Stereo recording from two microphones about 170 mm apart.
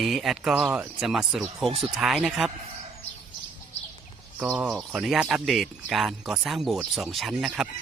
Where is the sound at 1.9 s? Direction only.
Centre (ahead or behind).